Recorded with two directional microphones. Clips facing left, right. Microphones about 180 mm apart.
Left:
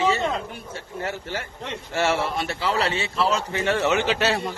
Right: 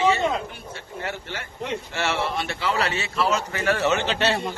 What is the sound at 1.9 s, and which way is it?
A man's voice, 40° left (ahead or behind).